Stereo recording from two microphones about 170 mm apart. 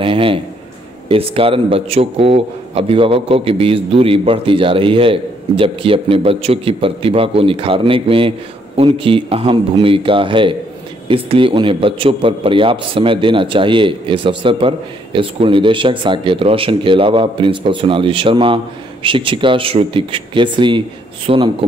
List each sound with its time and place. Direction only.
0.0 s a man's voice: 30° right (ahead or behind)